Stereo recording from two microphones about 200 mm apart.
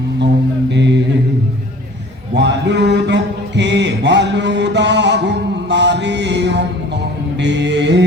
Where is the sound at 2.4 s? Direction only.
60° right (ahead or behind).